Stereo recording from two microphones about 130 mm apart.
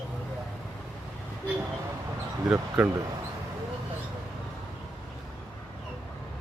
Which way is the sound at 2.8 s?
5° right (ahead or behind).